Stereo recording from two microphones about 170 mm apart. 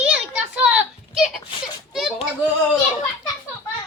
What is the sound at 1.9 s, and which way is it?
Children playing, centre (ahead or behind).